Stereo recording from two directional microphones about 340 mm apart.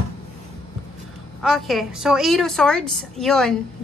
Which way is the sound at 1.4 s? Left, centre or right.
Centre.